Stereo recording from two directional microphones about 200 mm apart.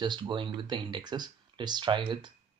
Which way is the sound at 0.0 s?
20° right (ahead or behind).